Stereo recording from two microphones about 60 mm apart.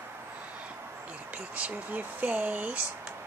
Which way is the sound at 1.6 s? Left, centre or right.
Right.